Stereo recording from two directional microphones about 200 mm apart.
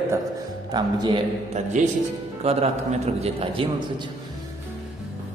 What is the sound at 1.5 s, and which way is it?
A man's voice, 35° right (ahead or behind).